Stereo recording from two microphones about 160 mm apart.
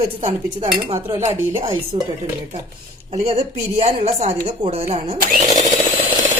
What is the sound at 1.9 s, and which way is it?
Speech, 30° right (ahead or behind).